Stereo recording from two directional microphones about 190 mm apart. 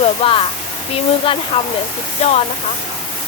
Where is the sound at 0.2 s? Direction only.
30° left (ahead or behind).